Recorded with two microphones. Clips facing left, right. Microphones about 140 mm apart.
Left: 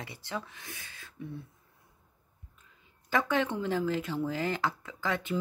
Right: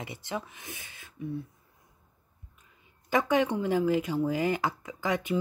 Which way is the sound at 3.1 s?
15° right (ahead or behind).